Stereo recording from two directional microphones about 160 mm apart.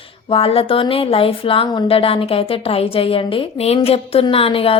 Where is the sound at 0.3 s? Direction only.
35° left (ahead or behind).